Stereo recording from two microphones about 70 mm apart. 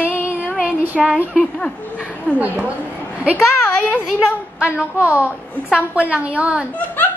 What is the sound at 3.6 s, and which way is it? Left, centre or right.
Speech, left.